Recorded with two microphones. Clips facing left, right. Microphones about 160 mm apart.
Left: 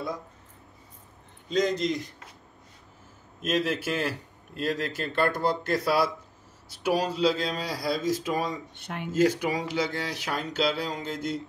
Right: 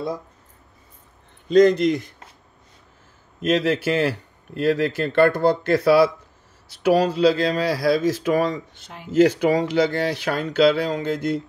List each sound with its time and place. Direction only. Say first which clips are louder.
1.5 s speech: right 11 dB; 65° right (ahead or behind)
3.4 s speech: right 7 dB; 70° right (ahead or behind)
8.7 s speech: left 4 dB; 65° left (ahead or behind)
9.1 s speech: right 8 dB; 65° right (ahead or behind)